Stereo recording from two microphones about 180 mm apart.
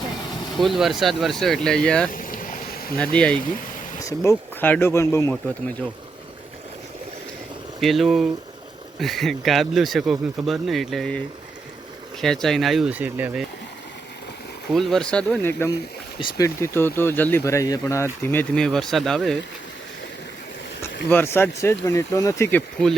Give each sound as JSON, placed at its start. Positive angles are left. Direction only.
{"t": 0.5, "sound": "speech", "side_deg": 0}
{"t": 2.1, "sound": "boat", "side_deg": 50}
{"t": 3.0, "sound": "speech", "side_deg": 5}
{"t": 7.8, "sound": "speech", "side_deg": 0}
{"t": 12.2, "sound": "speech", "side_deg": 0}
{"t": 14.7, "sound": "speech", "side_deg": 0}
{"t": 16.1, "sound": "speech", "side_deg": 25}
{"t": 16.6, "sound": "speech", "side_deg": 15}
{"t": 21.1, "sound": "speech", "side_deg": 10}